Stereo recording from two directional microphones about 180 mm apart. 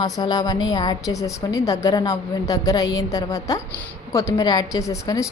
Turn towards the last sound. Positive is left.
turn(degrees=20)  # may be behind; listen again after turning